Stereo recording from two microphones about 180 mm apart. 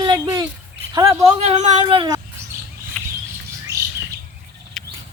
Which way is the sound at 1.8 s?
25° right (ahead or behind).